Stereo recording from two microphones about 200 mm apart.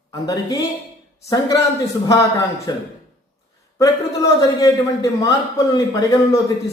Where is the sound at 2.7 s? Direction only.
20° left (ahead or behind).